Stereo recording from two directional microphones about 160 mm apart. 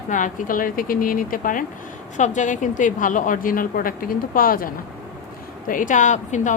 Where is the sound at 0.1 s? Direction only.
55° left (ahead or behind).